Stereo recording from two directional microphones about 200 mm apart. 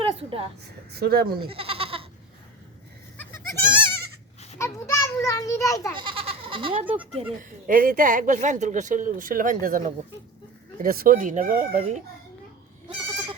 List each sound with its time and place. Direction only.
0.0 s a sound: 30° right (ahead or behind)
0.6 s speech: 50° right (ahead or behind)
1.5 s goat: 30° right (ahead or behind)
3.2 s goat: 10° left (ahead or behind)
4.5 s children playing: 15° left (ahead or behind)
6.0 s goat: 25° right (ahead or behind)
7.3 s speech: 45° right (ahead or behind)